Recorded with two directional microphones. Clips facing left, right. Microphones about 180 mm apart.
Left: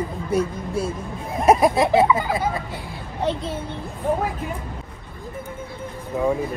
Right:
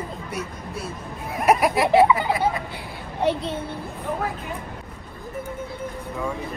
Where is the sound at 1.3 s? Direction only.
25° left (ahead or behind).